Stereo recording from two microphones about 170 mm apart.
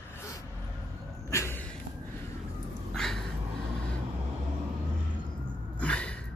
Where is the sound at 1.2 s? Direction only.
15° left (ahead or behind).